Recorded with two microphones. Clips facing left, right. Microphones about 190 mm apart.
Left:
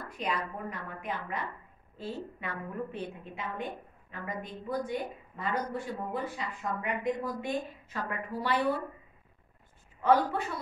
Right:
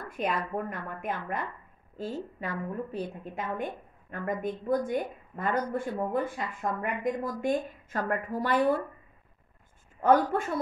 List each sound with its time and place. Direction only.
0.1 s speech: 50° right (ahead or behind)
10.0 s speech: 50° right (ahead or behind)